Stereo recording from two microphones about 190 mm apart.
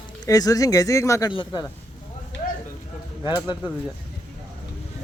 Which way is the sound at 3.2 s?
25° left (ahead or behind).